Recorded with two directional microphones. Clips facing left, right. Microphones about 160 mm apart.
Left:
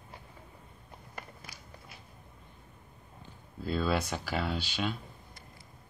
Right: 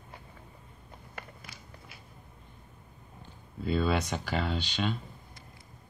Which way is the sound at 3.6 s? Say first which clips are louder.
Right 2 dB; centre (ahead or behind).